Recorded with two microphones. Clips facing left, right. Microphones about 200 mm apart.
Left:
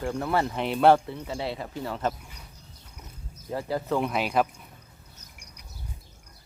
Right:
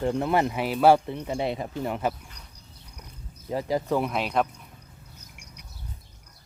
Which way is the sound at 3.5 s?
15° right (ahead or behind).